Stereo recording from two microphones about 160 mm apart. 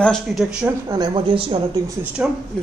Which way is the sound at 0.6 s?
10° right (ahead or behind).